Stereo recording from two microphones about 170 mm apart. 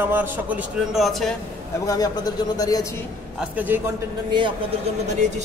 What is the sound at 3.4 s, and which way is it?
Speech, 10° right (ahead or behind).